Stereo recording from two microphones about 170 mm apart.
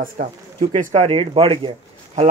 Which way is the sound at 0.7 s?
40° right (ahead or behind).